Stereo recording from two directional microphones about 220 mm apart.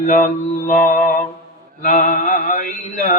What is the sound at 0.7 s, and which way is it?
Music, 35° left (ahead or behind).